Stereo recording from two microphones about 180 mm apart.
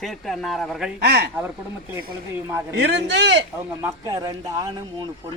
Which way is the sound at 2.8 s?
70° right (ahead or behind).